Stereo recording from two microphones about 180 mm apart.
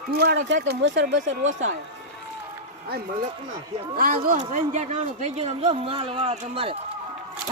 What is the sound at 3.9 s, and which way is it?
Speech, 55° right (ahead or behind).